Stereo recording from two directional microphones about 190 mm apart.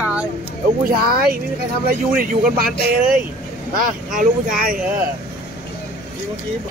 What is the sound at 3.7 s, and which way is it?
Speech, 45° right (ahead or behind).